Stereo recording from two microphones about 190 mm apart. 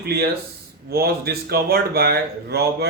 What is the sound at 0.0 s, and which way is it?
Speech, 55° right (ahead or behind).